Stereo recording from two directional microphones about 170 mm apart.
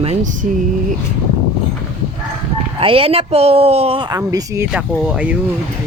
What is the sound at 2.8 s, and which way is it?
Speech, 35° right (ahead or behind).